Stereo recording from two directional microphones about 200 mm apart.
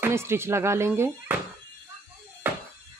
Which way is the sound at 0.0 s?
10° right (ahead or behind).